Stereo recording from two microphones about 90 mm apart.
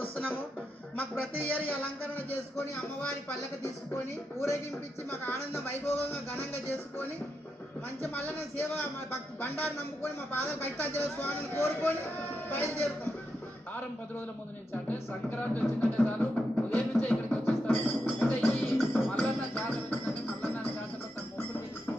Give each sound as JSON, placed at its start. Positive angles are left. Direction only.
{"t": 1.5, "sound": "speech", "side_deg": 20}
{"t": 3.9, "sound": "speech", "side_deg": 30}
{"t": 8.0, "sound": "speech", "side_deg": 20}
{"t": 14.7, "sound": "speech", "side_deg": 20}
{"t": 15.8, "sound": "music", "side_deg": 15}